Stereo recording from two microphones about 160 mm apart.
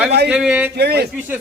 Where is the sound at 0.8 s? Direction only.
90° right.